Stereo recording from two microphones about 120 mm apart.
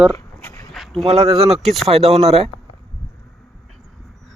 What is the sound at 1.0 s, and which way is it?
Speech, 55° right (ahead or behind).